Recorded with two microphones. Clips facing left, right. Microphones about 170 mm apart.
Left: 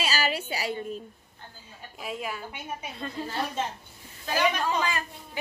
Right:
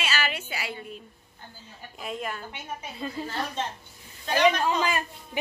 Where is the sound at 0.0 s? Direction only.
35° left (ahead or behind).